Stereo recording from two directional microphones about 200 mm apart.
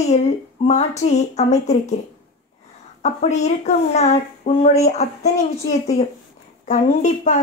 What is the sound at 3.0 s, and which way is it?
Speech, 35° left (ahead or behind).